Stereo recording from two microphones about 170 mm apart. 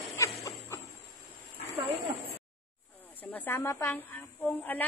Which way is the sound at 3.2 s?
10° left (ahead or behind).